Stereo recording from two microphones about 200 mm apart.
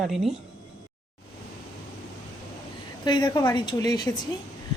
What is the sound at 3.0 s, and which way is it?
A woman's voice, 20° left (ahead or behind).